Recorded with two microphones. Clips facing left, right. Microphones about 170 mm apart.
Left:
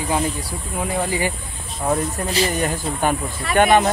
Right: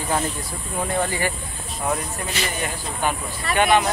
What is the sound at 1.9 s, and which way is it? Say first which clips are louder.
Speech: left 6 dB; 35° left (ahead or behind).